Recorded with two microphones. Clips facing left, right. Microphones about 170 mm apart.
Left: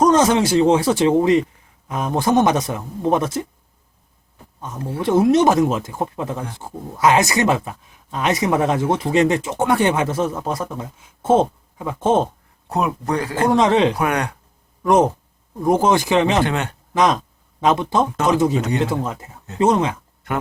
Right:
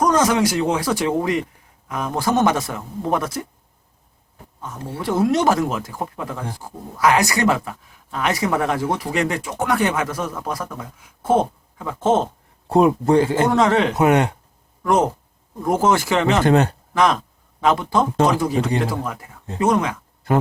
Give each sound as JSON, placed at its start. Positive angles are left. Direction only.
{"t": 0.0, "sound": "speech", "side_deg": 25}
{"t": 4.9, "sound": "speech", "side_deg": 20}
{"t": 12.6, "sound": "speech", "side_deg": -30}
{"t": 13.5, "sound": "speech", "side_deg": 20}
{"t": 13.9, "sound": "speech", "side_deg": -25}
{"t": 14.8, "sound": "speech", "side_deg": 20}
{"t": 16.4, "sound": "speech", "side_deg": -40}
{"t": 16.9, "sound": "speech", "side_deg": 20}